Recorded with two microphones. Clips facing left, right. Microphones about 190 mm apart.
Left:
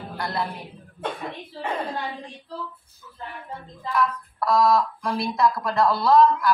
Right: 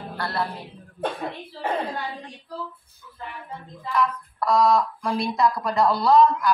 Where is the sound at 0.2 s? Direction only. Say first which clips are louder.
Even; 15° left (ahead or behind).